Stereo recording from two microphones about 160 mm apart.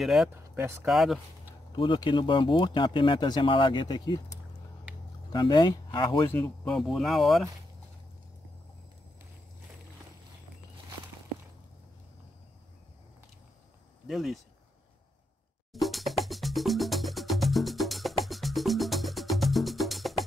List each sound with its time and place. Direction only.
0.0 s speech: centre (ahead or behind)
0.3 s speech: 15° right (ahead or behind)
0.8 s speech: centre (ahead or behind)
1.7 s speech: 30° left (ahead or behind)
6.2 s speech: 10° left (ahead or behind)
14.0 s speech: centre (ahead or behind)
15.7 s music: centre (ahead or behind)